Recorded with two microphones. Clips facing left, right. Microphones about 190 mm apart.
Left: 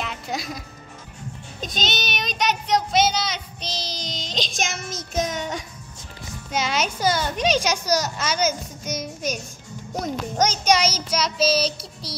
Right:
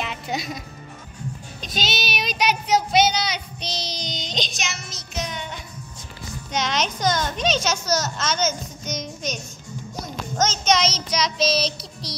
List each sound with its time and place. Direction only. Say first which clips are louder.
0.0 s music: right 1 dB; centre (ahead or behind)
1.7 s child singing: right 1 dB; 5° right (ahead or behind)
4.6 s child singing: left 5 dB; 50° left (ahead or behind)
6.5 s a child's voice: even; 5° left (ahead or behind)